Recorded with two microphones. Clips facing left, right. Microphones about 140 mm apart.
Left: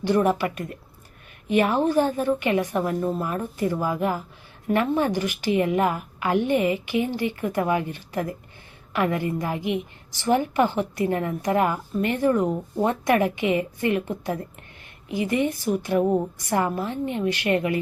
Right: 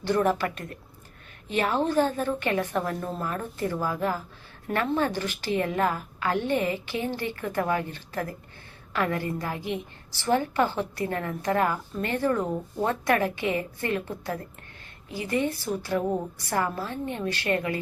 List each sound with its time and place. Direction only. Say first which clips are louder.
0.0 s a woman's voice: left 3 dB; 15° left (ahead or behind)